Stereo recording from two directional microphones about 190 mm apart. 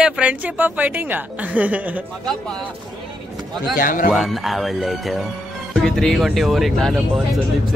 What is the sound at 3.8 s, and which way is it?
Speech, 45° left (ahead or behind).